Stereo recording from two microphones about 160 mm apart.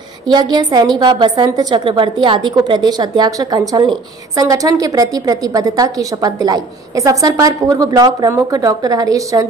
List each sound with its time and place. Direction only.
0.3 s a woman's voice: 25° right (ahead or behind)